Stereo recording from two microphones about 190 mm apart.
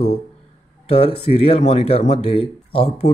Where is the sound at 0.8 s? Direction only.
35° left (ahead or behind).